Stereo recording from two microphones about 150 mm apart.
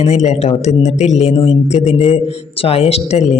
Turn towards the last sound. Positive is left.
turn(degrees=45)  # may be behind; listen again after turning